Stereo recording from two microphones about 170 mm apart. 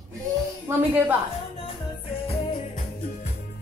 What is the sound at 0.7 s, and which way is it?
Speech, 10° right (ahead or behind).